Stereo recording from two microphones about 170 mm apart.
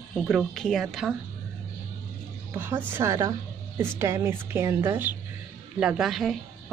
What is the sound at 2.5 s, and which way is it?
A woman's voice, 15° right (ahead or behind).